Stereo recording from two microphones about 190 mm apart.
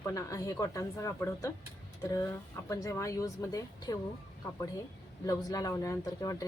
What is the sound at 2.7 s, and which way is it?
A woman's voice, 15° left (ahead or behind).